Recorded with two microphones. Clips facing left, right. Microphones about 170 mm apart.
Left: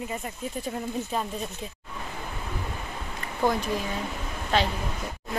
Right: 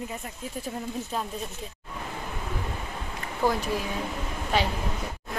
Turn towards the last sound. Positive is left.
turn(degrees=-10)  # may be behind; listen again after turning